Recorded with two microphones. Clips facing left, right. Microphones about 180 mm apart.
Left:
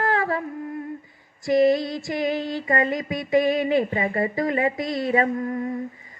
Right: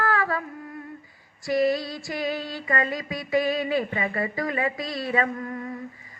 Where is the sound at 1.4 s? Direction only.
20° left (ahead or behind).